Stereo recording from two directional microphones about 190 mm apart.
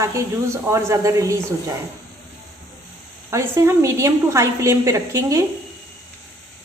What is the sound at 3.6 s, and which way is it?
A woman's voice, 15° right (ahead or behind).